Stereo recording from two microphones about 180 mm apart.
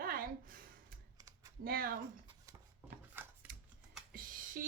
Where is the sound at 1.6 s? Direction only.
55° right (ahead or behind).